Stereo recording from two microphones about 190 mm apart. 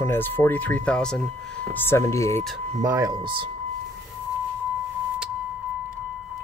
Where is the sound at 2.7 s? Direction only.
15° right (ahead or behind).